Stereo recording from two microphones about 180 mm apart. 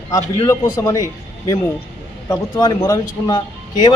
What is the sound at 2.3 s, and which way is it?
Speech, 20° left (ahead or behind).